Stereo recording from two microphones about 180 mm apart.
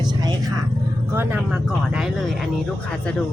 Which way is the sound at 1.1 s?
10° right (ahead or behind).